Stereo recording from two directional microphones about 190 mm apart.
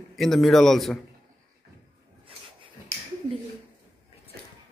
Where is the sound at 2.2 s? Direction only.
25° right (ahead or behind).